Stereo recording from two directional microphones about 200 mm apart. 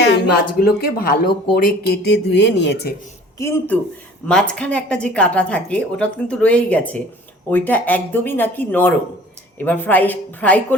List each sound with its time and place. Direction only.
0.0 s a sound: 65° left (ahead or behind)
0.8 s speech: 50° left (ahead or behind)
3.3 s a woman's voice: 15° left (ahead or behind)